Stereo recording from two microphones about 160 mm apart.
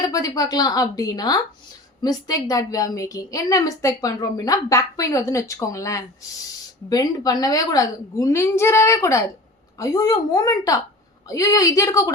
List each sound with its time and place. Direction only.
0.1 s a woman's voice: 20° left (ahead or behind)